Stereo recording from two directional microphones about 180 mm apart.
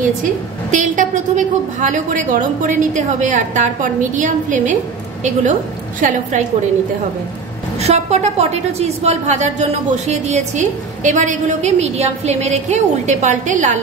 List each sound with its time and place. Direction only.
0.0 s a woman's voice: 45° right (ahead or behind)
7.8 s a woman's voice: 35° right (ahead or behind)